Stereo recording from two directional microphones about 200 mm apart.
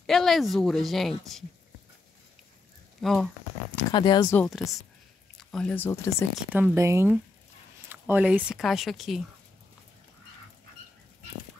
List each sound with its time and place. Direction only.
0.0 s speech: centre (ahead or behind)
3.0 s speech: centre (ahead or behind)
3.9 s speech: 20° left (ahead or behind)
4.5 s speech: centre (ahead or behind)
6.5 s speech: 10° right (ahead or behind)